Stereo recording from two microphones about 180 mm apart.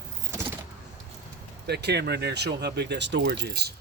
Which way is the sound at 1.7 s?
65° right (ahead or behind).